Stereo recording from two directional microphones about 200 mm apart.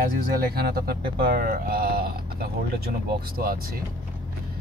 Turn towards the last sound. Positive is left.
turn(degrees=-50)  # may be behind; listen again after turning